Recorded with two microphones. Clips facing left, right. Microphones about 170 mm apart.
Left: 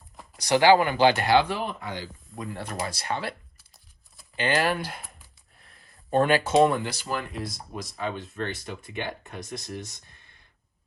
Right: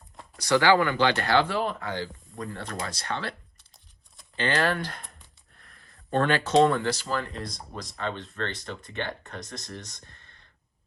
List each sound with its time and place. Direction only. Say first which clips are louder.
0.3 s speech: left 2 dB; 15° left (ahead or behind)
4.4 s speech: left 1 dB; 15° left (ahead or behind)